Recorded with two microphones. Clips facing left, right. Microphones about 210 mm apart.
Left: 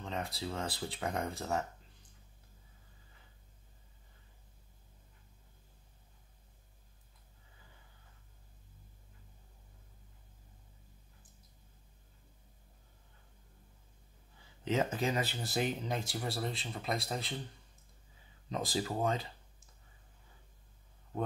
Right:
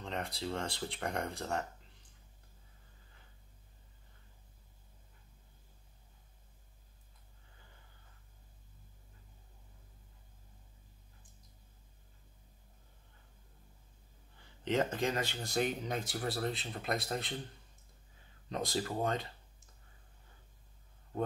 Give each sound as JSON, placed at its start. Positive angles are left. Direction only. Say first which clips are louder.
{"t": 0.0, "sound": "speech", "louder": "even", "side_deg": 0}
{"t": 14.6, "sound": "speech", "louder": "even", "side_deg": 5}
{"t": 18.5, "sound": "speech", "louder": "even", "side_deg": 0}